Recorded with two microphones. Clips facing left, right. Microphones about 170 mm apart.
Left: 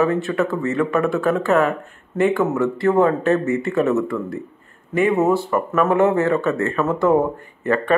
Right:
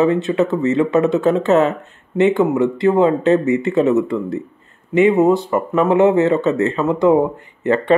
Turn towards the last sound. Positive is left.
turn(degrees=-20)  # may be behind; listen again after turning